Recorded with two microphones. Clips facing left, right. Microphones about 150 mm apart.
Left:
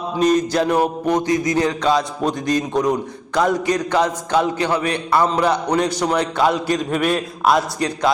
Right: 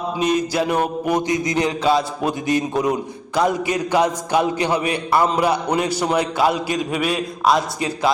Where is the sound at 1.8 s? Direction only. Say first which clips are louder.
Even; 5° right (ahead or behind).